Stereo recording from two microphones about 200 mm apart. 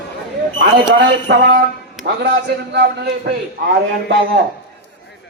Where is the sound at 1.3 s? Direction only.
55° right (ahead or behind).